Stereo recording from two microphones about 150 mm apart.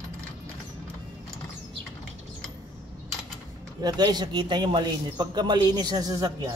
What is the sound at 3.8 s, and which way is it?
A man's voice, 30° right (ahead or behind).